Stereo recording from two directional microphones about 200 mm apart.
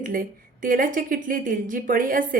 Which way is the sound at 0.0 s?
45° right (ahead or behind).